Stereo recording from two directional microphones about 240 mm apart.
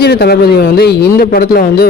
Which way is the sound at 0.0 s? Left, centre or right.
Left.